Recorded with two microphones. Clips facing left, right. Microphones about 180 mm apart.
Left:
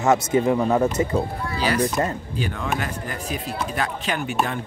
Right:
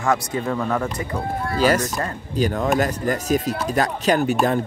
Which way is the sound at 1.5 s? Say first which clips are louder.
Right 4 dB; 45° right (ahead or behind).